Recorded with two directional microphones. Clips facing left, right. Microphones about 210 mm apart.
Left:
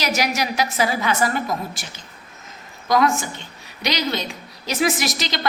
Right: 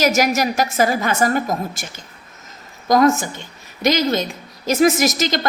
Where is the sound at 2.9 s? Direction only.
45° right (ahead or behind).